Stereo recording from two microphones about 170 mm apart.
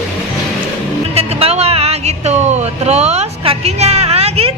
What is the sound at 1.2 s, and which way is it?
Speech, 35° right (ahead or behind).